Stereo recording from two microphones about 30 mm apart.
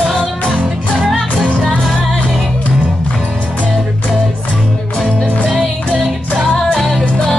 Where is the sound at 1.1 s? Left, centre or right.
Centre.